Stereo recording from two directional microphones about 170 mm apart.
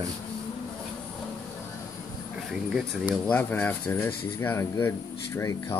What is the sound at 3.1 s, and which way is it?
Speech, 10° left (ahead or behind).